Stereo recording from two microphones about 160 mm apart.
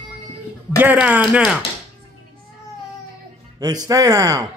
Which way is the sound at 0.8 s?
10° right (ahead or behind).